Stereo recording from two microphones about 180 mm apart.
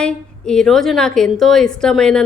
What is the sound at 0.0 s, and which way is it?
A woman's voice, 5° left (ahead or behind).